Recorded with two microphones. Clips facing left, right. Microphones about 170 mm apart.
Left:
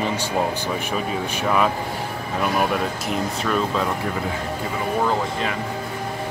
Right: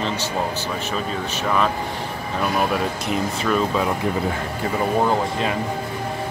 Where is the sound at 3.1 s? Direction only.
Centre (ahead or behind).